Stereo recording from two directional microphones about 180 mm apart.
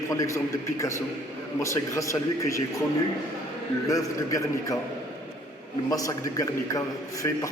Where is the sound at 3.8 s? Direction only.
20° left (ahead or behind).